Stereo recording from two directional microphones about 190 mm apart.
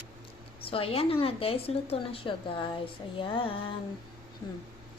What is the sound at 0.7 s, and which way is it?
A woman's voice, 30° left (ahead or behind).